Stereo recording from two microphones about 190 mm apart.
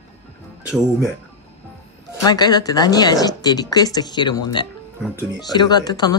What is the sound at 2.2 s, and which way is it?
Speech, 20° left (ahead or behind).